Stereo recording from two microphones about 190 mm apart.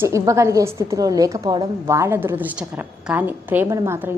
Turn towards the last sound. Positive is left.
turn(degrees=-10)  # may be behind; listen again after turning